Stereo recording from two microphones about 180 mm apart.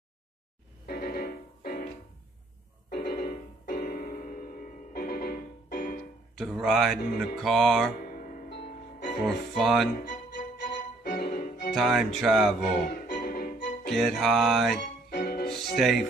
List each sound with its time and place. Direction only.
0.8 s music: 60° left (ahead or behind)
2.9 s music: 60° left (ahead or behind)
6.3 s music: centre (ahead or behind)
8.5 s music: 60° left (ahead or behind)
9.6 s music: centre (ahead or behind)
9.9 s music: 50° left (ahead or behind)
10.6 s music: 65° left (ahead or behind)
11.7 s music: centre (ahead or behind)
12.8 s music: 50° left (ahead or behind)
13.8 s music: centre (ahead or behind)
15.0 s music: 50° left (ahead or behind)
15.7 s music: centre (ahead or behind)